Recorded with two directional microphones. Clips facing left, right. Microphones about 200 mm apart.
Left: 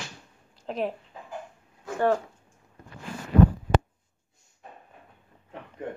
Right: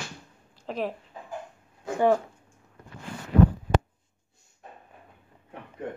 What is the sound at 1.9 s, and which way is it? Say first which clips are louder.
Speech: right 2 dB; 10° right (ahead or behind).